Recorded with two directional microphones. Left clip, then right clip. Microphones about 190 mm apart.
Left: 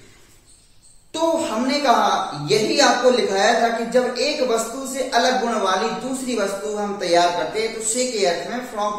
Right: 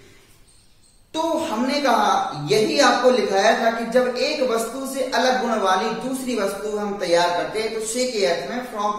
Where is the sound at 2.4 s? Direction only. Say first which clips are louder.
Left 1 dB; 15° left (ahead or behind).